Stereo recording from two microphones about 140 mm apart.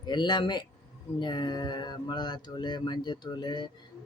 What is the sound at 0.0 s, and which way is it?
Speech, 30° left (ahead or behind).